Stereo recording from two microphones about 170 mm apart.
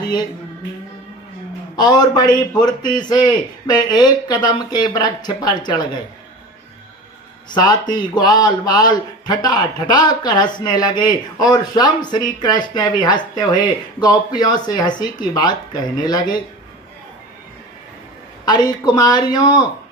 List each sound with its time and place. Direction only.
1.7 s a man's voice: 25° left (ahead or behind)
7.5 s a man's voice: 25° left (ahead or behind)
18.4 s a man's voice: 25° left (ahead or behind)